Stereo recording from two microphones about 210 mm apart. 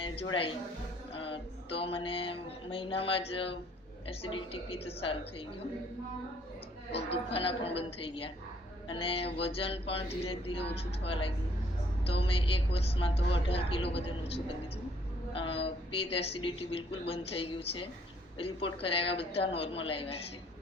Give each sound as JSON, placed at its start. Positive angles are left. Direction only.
{"t": 0.0, "sound": "a woman's voice", "side_deg": 25}
{"t": 7.1, "sound": "a woman's voice", "side_deg": 25}